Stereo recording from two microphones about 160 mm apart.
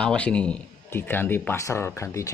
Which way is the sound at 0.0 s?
5° left (ahead or behind).